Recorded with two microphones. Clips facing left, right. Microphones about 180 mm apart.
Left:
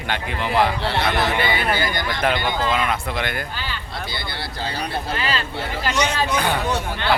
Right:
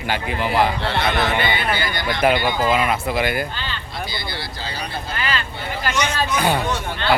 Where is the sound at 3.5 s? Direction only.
10° left (ahead or behind).